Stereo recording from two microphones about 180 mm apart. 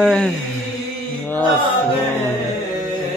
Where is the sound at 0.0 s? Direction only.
5° left (ahead or behind).